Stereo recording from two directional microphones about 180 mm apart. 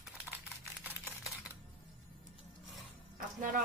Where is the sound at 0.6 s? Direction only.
10° right (ahead or behind).